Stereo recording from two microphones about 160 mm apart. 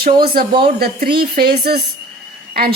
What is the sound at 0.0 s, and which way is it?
A woman's voice, 70° right (ahead or behind).